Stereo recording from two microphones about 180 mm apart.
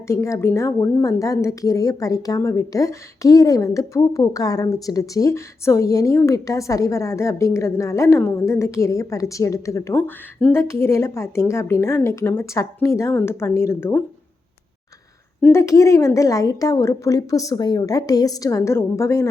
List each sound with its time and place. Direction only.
0.1 s a woman's voice: 15° left (ahead or behind)
15.4 s a woman's voice: 10° left (ahead or behind)